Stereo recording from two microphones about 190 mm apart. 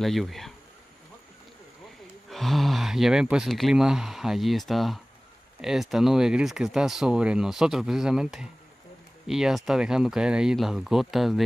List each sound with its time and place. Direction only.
0.0 s speech: centre (ahead or behind)
2.2 s speech: centre (ahead or behind)